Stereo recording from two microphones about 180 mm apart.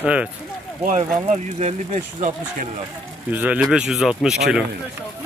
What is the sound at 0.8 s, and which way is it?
Speech, 40° right (ahead or behind).